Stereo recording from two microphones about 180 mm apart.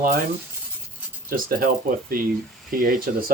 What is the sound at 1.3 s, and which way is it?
Speech, 50° right (ahead or behind).